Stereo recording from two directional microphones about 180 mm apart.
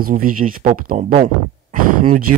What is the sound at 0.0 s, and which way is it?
Speech, 50° right (ahead or behind).